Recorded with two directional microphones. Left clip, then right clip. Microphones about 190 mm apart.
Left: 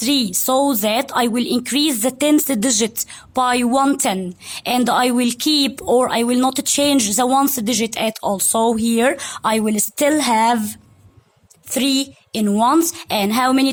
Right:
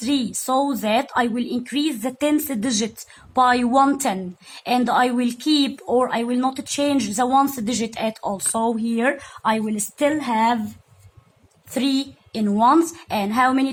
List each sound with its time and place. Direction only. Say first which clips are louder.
0.0 s a woman's voice: left 5 dB; 35° left (ahead or behind)
3.3 s a woman's voice: even; 25° left (ahead or behind); by 10.6 s 55° left (ahead or behind)
11.7 s a woman's voice: left 4 dB; 25° left (ahead or behind)